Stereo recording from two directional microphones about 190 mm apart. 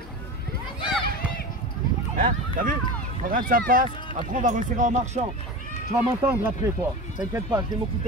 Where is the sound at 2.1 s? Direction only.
45° right (ahead or behind).